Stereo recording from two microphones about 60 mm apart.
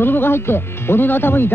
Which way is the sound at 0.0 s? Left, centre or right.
Left.